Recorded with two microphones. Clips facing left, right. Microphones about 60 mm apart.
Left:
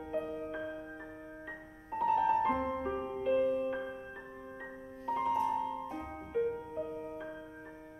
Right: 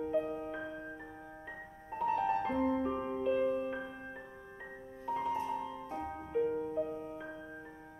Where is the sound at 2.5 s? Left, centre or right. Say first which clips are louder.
Right 2 dB; centre.